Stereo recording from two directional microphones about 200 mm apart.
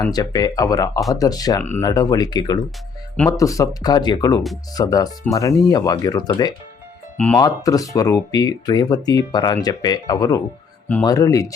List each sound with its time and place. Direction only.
0.1 s speech: 20° left (ahead or behind)